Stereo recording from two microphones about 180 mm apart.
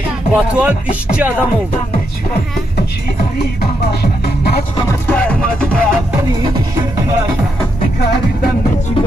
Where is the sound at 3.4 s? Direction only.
65° left (ahead or behind).